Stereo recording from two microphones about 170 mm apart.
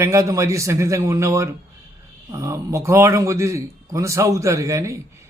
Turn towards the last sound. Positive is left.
turn(degrees=-15)  # may be behind; listen again after turning